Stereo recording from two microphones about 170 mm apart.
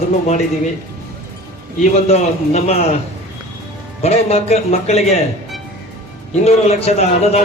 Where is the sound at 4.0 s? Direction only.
35° left (ahead or behind).